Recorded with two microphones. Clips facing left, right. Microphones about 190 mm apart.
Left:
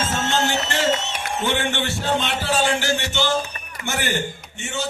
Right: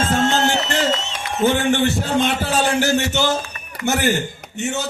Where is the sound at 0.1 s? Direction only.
45° right (ahead or behind).